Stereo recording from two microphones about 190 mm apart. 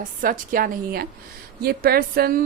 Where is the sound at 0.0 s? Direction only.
45° right (ahead or behind).